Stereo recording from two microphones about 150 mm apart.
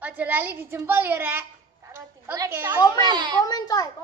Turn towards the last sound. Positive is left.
turn(degrees=25)  # may be behind; listen again after turning